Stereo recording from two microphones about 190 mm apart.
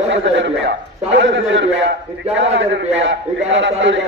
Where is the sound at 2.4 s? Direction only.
85° right.